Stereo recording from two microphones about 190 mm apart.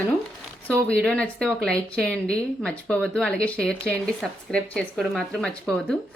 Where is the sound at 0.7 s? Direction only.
5° left (ahead or behind).